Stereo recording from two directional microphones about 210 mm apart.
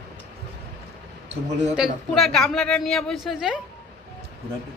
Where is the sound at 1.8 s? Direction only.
Centre (ahead or behind).